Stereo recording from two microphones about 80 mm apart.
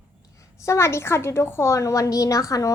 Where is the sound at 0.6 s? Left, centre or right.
Left.